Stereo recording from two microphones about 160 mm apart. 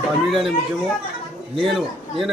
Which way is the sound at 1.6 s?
Centre (ahead or behind).